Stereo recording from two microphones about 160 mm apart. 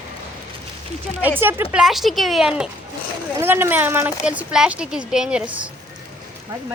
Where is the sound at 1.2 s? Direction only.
10° right (ahead or behind).